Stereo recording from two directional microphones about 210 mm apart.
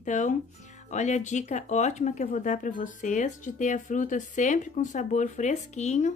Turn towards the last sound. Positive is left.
turn(degrees=35)  # may be behind; listen again after turning